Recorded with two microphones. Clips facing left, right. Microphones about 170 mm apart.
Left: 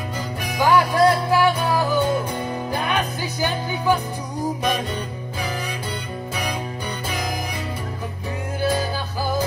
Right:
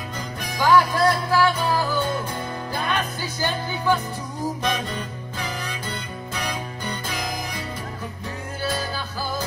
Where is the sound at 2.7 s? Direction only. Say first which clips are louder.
Left 1 dB; 15° left (ahead or behind).